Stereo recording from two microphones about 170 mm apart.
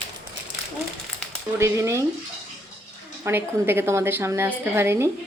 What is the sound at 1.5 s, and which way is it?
Speech, 15° right (ahead or behind).